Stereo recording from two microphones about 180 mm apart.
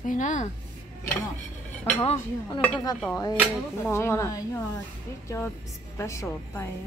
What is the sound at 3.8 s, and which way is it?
Speech, 15° left (ahead or behind).